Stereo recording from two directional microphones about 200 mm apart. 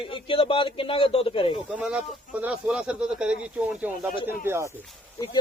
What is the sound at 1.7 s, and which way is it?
A man's voice, 5° right (ahead or behind).